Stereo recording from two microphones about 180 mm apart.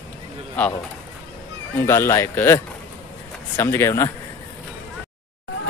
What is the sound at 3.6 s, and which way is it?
Speech, 15° left (ahead or behind).